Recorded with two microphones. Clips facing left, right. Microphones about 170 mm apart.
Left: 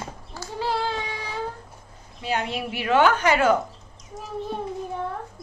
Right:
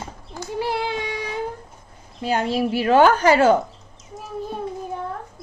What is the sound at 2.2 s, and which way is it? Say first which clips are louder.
A woman's voice: right 6 dB; 40° right (ahead or behind).